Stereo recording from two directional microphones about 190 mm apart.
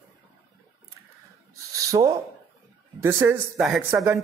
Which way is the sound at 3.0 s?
10° right (ahead or behind).